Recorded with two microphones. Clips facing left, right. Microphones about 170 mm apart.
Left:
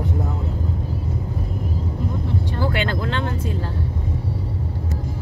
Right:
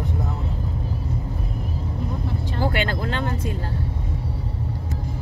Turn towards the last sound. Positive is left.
turn(degrees=-45)  # may be behind; listen again after turning